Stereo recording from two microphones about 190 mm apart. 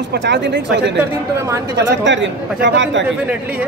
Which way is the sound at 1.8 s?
70° right (ahead or behind).